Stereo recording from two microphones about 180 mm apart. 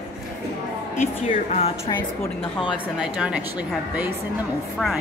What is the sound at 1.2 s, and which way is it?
Speech, 40° left (ahead or behind).